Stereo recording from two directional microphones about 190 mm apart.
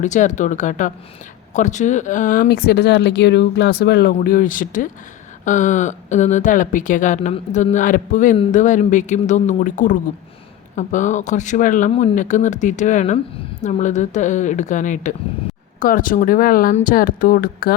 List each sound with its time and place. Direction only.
0.0 s a woman's voice: 40° left (ahead or behind)